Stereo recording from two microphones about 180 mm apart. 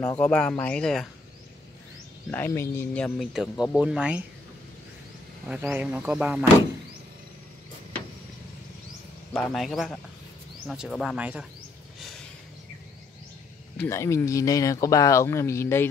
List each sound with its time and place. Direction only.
0.2 s speech: 5° left (ahead or behind)
2.3 s speech: 15° left (ahead or behind); by 4.2 s 5° right (ahead or behind)
5.5 s speech: 10° right (ahead or behind)
9.3 s speech: centre (ahead or behind)
13.7 s speech: 15° left (ahead or behind)